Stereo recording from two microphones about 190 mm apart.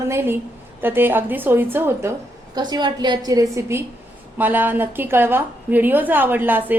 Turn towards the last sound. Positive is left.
turn(degrees=-10)  # may be behind; listen again after turning